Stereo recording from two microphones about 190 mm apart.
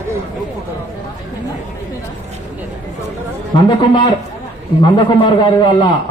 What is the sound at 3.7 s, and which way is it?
A man's voice, 25° left (ahead or behind).